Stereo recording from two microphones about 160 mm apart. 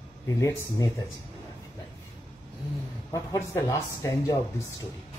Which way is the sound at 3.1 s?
20° left (ahead or behind).